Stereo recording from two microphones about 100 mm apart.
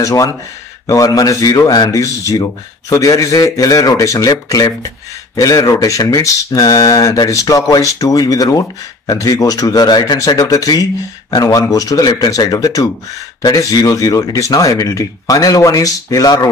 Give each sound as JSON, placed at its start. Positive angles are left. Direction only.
{"t": 0.0, "sound": "speech", "side_deg": 35}